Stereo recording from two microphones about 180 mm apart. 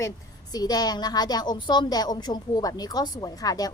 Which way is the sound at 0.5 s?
20° left (ahead or behind).